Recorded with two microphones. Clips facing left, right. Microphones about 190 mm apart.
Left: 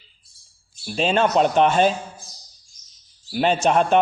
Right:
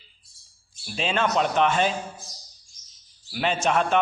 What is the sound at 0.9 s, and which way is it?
Speech, 40° left (ahead or behind).